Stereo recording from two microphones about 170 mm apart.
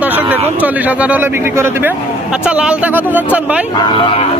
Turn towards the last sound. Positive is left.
turn(degrees=30)  # may be behind; listen again after turning